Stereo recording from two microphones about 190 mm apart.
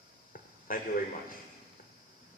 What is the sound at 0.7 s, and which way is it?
Speech, 45° left (ahead or behind).